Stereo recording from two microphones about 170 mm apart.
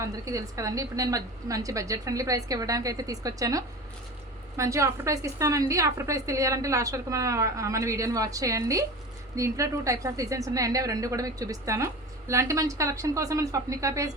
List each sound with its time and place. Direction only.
0.0 s a woman's voice: 20° right (ahead or behind)